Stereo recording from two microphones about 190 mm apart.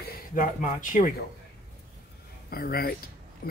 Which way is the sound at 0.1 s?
45° left (ahead or behind).